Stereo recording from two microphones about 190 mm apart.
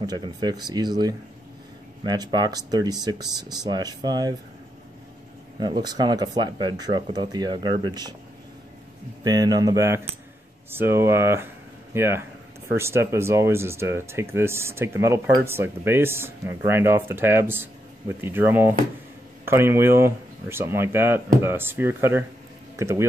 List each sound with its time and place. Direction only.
0.0 s speech: 20° right (ahead or behind)
5.6 s speech: 20° right (ahead or behind)
9.2 s speech: 20° right (ahead or behind)